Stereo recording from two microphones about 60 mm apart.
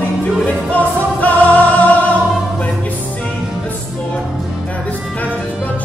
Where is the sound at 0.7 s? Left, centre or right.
Left.